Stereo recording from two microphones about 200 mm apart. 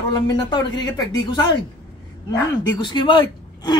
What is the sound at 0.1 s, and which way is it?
Speech, 20° left (ahead or behind).